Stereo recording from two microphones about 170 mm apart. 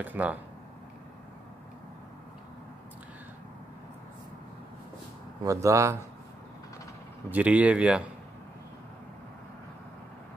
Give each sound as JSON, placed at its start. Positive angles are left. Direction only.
{"t": 0.0, "sound": "speech", "side_deg": -10}
{"t": 5.4, "sound": "speech", "side_deg": -20}
{"t": 7.2, "sound": "speech", "side_deg": -10}